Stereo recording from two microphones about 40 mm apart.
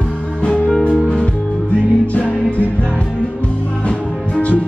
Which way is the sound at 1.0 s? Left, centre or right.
Left.